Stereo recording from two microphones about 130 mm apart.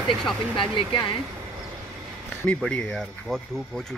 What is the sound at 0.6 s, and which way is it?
Speech, 40° left (ahead or behind).